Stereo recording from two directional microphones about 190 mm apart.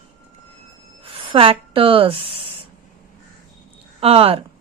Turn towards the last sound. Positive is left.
turn(degrees=-30)  # may be behind; listen again after turning